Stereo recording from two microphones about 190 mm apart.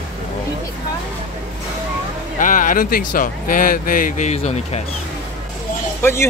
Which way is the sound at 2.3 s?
45° left (ahead or behind).